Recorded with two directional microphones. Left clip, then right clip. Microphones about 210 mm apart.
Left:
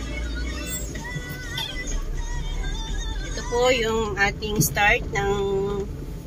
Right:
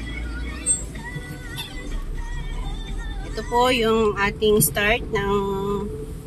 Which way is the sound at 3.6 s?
35° right (ahead or behind).